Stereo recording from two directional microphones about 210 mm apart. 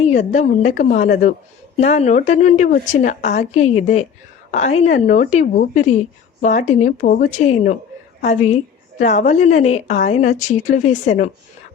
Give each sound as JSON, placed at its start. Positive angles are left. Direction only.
{"t": 0.0, "sound": "a woman's voice", "side_deg": 35}